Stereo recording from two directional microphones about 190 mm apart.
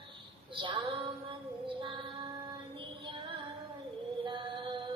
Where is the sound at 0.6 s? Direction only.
25° right (ahead or behind).